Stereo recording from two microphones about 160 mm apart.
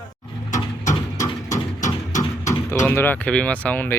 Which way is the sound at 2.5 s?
20° left (ahead or behind).